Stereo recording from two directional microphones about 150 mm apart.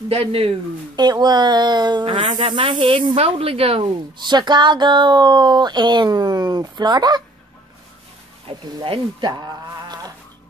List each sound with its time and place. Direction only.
0.1 s speech: 40° right (ahead or behind)
8.5 s speech: 35° right (ahead or behind)